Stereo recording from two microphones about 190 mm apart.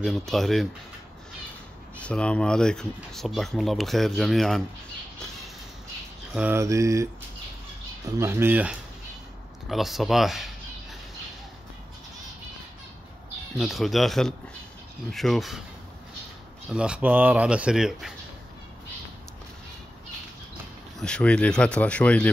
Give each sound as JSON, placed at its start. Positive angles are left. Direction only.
{"t": 0.0, "sound": "speech", "side_deg": 0}
{"t": 2.0, "sound": "speech", "side_deg": 5}
{"t": 6.3, "sound": "mantra", "side_deg": -10}
{"t": 8.2, "sound": "mantra", "side_deg": -10}
{"t": 9.7, "sound": "speech", "side_deg": 0}
{"t": 13.6, "sound": "speech", "side_deg": 0}
{"t": 16.7, "sound": "speech", "side_deg": -5}
{"t": 21.0, "sound": "speech", "side_deg": 5}